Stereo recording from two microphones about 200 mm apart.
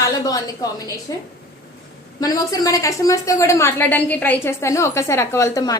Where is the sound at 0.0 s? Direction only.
20° left (ahead or behind).